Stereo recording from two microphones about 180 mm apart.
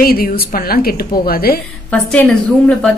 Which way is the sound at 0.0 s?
55° left (ahead or behind).